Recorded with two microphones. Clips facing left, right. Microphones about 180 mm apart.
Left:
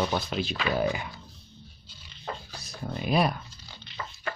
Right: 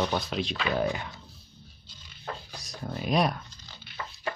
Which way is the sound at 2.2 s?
5° left (ahead or behind).